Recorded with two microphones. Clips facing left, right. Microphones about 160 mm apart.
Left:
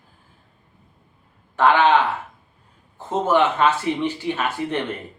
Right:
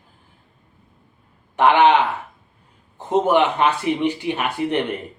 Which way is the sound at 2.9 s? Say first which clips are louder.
Right 2 dB; 15° right (ahead or behind).